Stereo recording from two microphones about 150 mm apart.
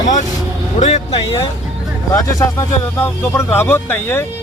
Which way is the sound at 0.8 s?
45° left (ahead or behind).